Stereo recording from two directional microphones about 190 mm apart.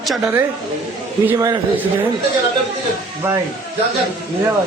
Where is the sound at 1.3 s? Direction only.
15° right (ahead or behind).